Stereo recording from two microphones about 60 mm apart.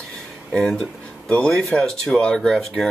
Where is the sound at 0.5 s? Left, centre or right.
Centre.